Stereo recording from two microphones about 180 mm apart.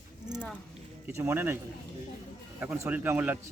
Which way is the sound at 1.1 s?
10° right (ahead or behind).